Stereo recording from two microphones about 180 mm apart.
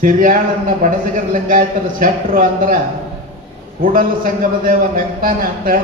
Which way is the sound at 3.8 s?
50° right (ahead or behind).